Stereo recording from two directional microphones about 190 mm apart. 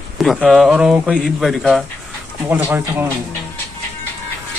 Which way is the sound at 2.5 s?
10° right (ahead or behind).